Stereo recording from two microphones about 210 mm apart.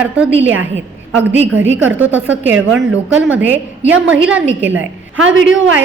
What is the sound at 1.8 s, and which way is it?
A woman's voice, 10° right (ahead or behind).